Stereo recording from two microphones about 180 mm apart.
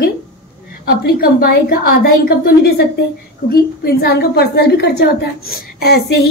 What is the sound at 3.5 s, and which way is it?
A woman's voice, 60° left (ahead or behind).